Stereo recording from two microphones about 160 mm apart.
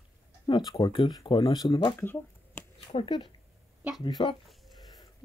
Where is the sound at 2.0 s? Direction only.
15° left (ahead or behind).